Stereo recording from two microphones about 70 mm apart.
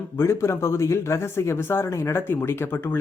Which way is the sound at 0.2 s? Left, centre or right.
Left.